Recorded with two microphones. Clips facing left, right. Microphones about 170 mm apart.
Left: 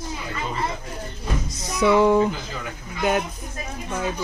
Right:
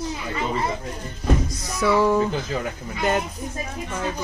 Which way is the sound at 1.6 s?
20° left (ahead or behind).